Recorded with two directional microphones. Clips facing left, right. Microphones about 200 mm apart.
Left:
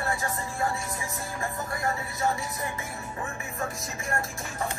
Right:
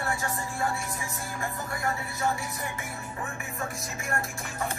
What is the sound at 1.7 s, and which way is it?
Music, 30° left (ahead or behind).